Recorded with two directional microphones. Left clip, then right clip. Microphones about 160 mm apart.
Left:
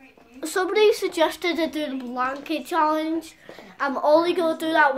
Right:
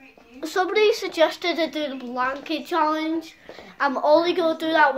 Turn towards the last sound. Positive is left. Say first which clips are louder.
# right 1 dB
turn(degrees=0)  # may be behind; listen again after turning